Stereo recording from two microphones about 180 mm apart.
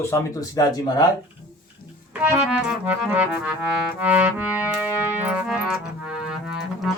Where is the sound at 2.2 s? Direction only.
5° right (ahead or behind).